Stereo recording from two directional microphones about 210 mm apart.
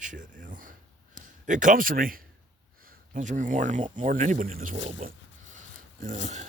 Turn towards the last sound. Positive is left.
turn(degrees=-35)  # may be behind; listen again after turning